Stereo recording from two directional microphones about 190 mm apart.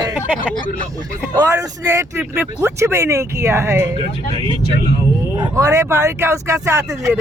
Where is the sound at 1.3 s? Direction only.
15° right (ahead or behind).